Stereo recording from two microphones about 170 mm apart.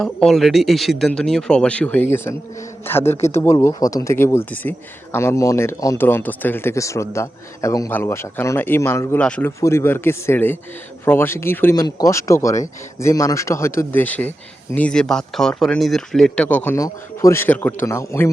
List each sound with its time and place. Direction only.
0.0 s speech: centre (ahead or behind)